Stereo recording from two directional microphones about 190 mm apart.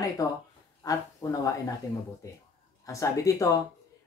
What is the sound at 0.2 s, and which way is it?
Speech, 20° left (ahead or behind).